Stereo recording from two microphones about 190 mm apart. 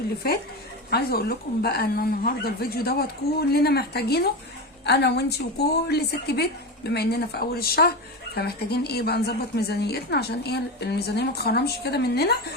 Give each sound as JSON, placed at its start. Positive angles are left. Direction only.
{"t": 0.9, "sound": "a woman's voice", "side_deg": 55}